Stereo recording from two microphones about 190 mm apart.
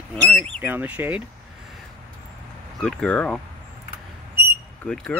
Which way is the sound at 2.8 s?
5° left (ahead or behind).